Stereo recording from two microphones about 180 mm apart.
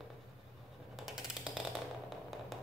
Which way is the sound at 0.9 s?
Centre (ahead or behind).